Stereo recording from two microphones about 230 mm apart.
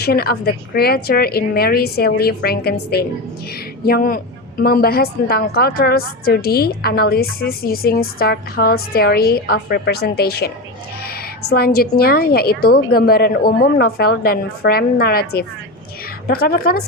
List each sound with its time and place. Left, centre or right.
0.0 s a woman's voice: left